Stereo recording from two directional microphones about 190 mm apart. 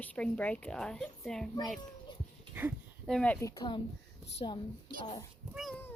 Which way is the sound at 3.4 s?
20° left (ahead or behind).